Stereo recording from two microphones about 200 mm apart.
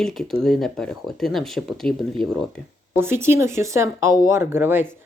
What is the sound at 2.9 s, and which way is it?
Speech, 10° right (ahead or behind).